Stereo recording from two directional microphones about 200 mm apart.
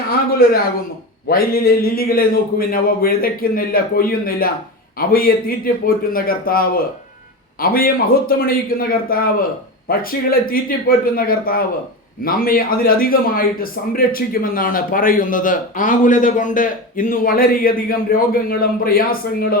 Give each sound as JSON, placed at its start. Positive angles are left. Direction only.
{"t": 0.1, "sound": "a man's voice", "side_deg": 50}